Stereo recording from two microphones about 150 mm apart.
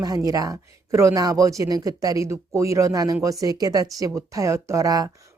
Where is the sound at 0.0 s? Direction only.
25° right (ahead or behind).